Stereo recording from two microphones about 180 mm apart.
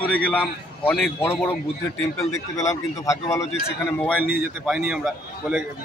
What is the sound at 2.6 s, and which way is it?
A man's voice, 15° left (ahead or behind).